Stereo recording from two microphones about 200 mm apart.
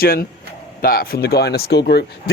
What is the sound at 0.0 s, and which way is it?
Speech, 50° left (ahead or behind).